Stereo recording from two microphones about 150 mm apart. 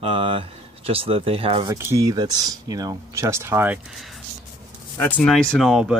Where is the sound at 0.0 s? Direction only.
40° right (ahead or behind).